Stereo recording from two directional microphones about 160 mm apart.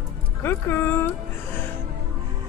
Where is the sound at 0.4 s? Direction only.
15° left (ahead or behind).